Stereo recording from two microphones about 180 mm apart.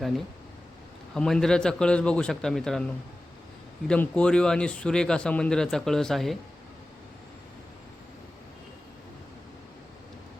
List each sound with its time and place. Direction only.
1.1 s speech: 5° left (ahead or behind)
3.8 s speech: 5° left (ahead or behind)